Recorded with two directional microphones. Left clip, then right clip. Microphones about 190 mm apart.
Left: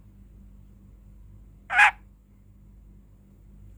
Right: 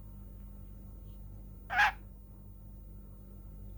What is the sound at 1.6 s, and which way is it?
Frog, 25° left (ahead or behind).